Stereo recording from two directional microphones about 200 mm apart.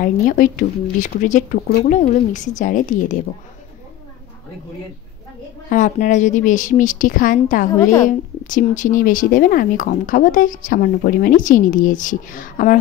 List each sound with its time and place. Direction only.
0.0 s speech: 40° left (ahead or behind)
5.7 s speech: 40° left (ahead or behind)
7.8 s a woman's voice: 15° left (ahead or behind)
8.5 s speech: 40° left (ahead or behind)